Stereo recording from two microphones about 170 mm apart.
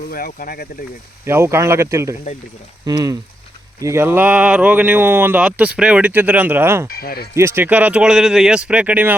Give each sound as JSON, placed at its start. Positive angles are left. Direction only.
{"t": 0.1, "sound": "speech", "side_deg": 60}
{"t": 1.2, "sound": "speech", "side_deg": -15}
{"t": 6.8, "sound": "speech", "side_deg": 60}
{"t": 7.3, "sound": "speech", "side_deg": -15}